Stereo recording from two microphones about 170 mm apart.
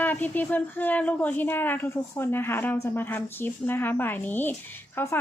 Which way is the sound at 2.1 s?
15° left (ahead or behind).